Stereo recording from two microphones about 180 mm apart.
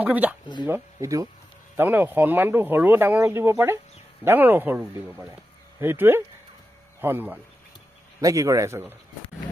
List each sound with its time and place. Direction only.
0.0 s speech: 10° right (ahead or behind)